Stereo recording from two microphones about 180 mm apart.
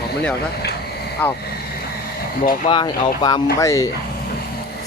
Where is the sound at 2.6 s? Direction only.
25° left (ahead or behind).